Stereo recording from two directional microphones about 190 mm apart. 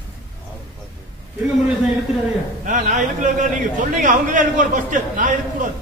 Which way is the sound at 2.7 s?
40° right (ahead or behind).